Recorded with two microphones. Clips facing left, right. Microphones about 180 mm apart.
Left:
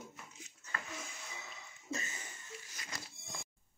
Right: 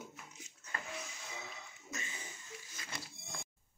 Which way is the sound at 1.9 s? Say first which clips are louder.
Left 5 dB; 30° left (ahead or behind).